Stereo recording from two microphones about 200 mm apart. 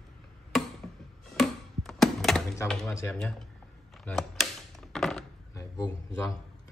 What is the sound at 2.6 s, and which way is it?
Speech, 10° left (ahead or behind).